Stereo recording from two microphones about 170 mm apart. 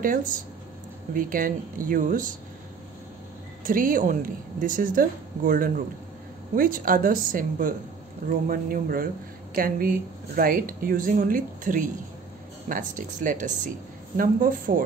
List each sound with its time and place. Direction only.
0.0 s speech: 55° right (ahead or behind)
3.6 s speech: 55° right (ahead or behind)